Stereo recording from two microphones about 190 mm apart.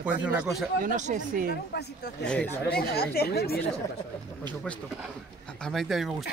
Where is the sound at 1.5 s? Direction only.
60° left (ahead or behind).